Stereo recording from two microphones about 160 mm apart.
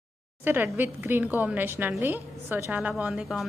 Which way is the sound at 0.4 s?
10° right (ahead or behind).